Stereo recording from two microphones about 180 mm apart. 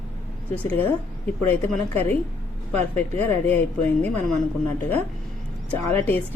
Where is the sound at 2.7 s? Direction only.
10° left (ahead or behind).